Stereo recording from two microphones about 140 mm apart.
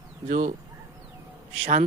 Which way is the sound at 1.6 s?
55° right (ahead or behind).